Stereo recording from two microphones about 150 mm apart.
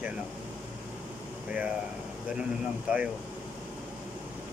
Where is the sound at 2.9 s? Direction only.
10° right (ahead or behind).